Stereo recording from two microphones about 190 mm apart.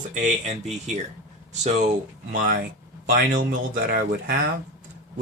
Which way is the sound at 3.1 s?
45° right (ahead or behind).